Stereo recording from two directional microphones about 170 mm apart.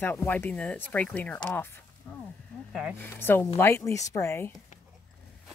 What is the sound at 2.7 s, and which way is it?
Speech, 5° right (ahead or behind).